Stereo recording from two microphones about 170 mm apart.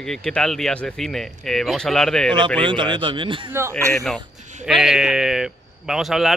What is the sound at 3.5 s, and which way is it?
Speech, 15° right (ahead or behind).